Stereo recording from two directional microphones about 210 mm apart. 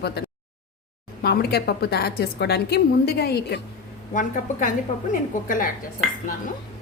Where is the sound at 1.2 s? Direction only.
50° left (ahead or behind).